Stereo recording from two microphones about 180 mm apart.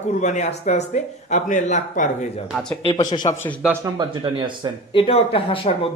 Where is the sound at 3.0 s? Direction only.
25° left (ahead or behind).